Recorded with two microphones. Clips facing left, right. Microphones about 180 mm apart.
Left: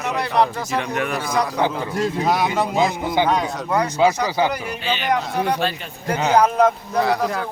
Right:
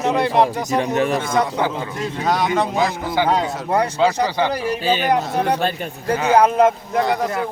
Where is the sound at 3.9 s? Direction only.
10° left (ahead or behind).